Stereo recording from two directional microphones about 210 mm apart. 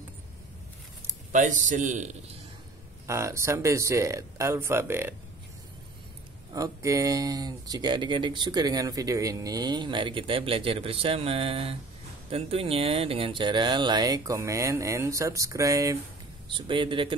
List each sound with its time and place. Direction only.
1.3 s a man's voice: 35° right (ahead or behind)
3.1 s speech: 15° right (ahead or behind)
6.5 s speech: 15° right (ahead or behind)